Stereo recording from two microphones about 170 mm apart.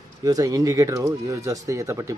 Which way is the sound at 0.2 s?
20° right (ahead or behind).